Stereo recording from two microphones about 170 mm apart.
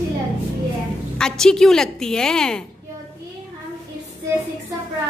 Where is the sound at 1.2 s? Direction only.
5° left (ahead or behind).